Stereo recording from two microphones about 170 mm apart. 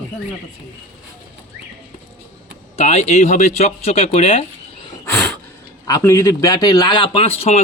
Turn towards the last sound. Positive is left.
turn(degrees=40)  # may be behind; listen again after turning